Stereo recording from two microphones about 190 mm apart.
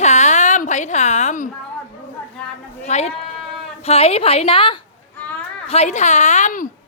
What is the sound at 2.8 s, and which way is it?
Speech, 35° left (ahead or behind).